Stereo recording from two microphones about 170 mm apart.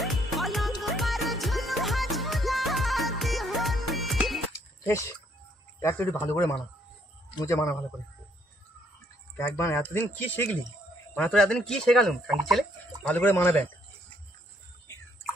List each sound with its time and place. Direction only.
0.0 s music: centre (ahead or behind)
4.5 s a sound: 15° left (ahead or behind)
5.8 s speech: 15° left (ahead or behind)
9.4 s speech: 15° left (ahead or behind)